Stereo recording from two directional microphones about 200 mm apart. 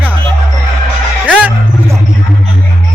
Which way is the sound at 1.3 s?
5° right (ahead or behind).